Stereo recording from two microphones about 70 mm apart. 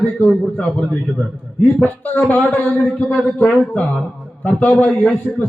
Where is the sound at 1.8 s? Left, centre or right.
Left.